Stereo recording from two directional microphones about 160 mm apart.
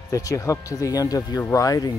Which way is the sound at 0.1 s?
20° left (ahead or behind).